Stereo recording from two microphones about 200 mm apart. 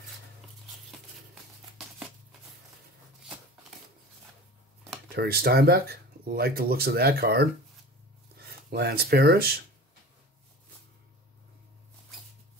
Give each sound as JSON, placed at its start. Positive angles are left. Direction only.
{"t": 5.1, "sound": "speech", "side_deg": -50}